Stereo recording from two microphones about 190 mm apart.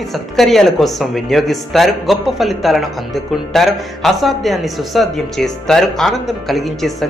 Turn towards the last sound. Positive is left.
turn(degrees=0)  # may be behind; listen again after turning